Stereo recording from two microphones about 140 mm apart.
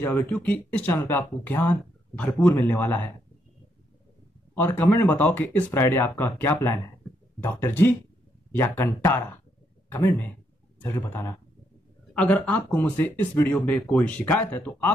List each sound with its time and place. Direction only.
0.0 s speech: 10° left (ahead or behind)
4.6 s speech: 15° left (ahead or behind)